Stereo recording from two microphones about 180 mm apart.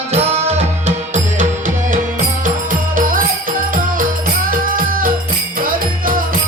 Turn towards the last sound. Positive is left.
turn(degrees=-50)  # may be behind; listen again after turning